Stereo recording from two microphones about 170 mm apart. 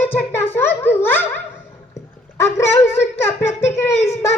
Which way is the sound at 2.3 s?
15° left (ahead or behind).